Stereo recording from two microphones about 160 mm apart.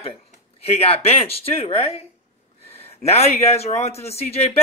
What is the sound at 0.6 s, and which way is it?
A man's voice, 40° left (ahead or behind).